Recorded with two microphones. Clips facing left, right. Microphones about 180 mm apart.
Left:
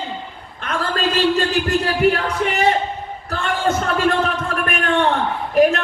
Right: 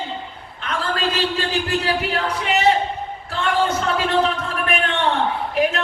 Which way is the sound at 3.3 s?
45° left (ahead or behind).